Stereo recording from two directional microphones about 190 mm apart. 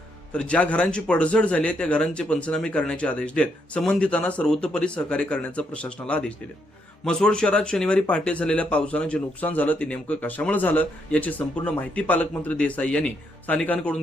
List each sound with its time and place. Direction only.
0.3 s speech: 5° left (ahead or behind)